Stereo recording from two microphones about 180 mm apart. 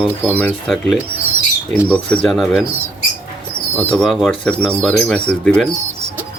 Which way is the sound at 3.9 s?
Centre (ahead or behind).